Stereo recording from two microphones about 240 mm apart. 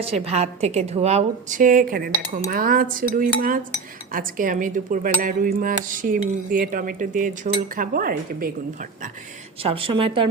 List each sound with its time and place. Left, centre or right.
0.0 s cutlery: right
9.6 s a woman's voice: right